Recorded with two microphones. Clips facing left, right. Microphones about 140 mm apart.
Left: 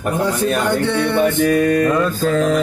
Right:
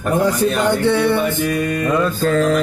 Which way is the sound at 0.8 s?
5° right (ahead or behind).